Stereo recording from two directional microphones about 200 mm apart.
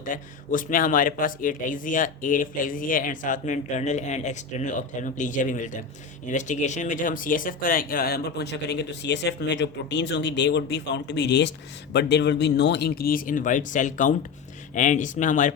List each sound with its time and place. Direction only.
0.0 s a man's voice: 40° left (ahead or behind)